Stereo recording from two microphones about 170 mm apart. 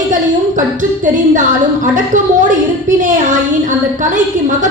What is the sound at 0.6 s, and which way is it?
A woman's voice, 50° right (ahead or behind).